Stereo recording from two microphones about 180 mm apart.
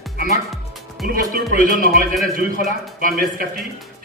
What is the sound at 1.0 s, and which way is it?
Music, 55° right (ahead or behind).